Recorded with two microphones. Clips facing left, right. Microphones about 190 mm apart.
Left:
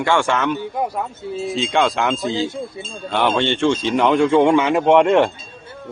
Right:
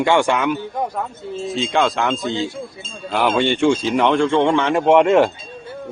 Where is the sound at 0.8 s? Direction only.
10° left (ahead or behind).